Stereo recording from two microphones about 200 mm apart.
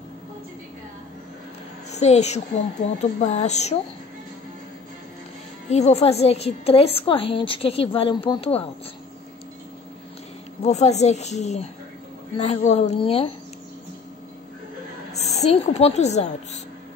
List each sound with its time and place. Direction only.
1.9 s speech: 35° left (ahead or behind)
5.7 s a woman's voice: 35° left (ahead or behind)
10.6 s speech: 35° left (ahead or behind)
15.4 s speech: 30° left (ahead or behind)